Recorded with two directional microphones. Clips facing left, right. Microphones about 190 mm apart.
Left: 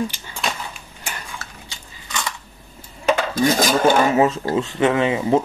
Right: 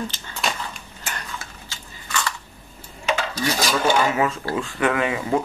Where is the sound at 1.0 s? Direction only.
10° left (ahead or behind).